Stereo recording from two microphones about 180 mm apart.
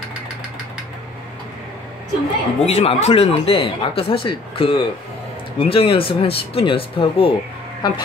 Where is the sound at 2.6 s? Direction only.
35° left (ahead or behind).